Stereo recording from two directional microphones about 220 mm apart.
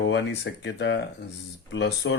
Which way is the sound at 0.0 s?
50° left (ahead or behind).